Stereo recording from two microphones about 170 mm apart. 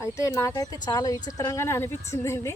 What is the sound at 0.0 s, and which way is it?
A woman's voice, 15° left (ahead or behind).